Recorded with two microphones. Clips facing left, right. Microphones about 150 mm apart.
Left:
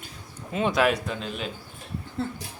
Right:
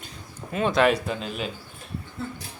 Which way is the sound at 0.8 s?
Centre (ahead or behind).